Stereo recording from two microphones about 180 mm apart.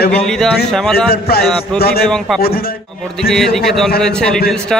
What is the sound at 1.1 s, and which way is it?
Speech, 55° left (ahead or behind).